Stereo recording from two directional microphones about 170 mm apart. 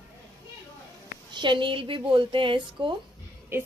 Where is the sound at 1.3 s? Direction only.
30° right (ahead or behind).